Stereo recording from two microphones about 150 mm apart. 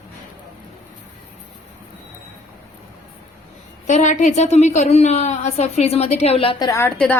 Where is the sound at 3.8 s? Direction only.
55° left (ahead or behind); by 6.7 s 35° left (ahead or behind).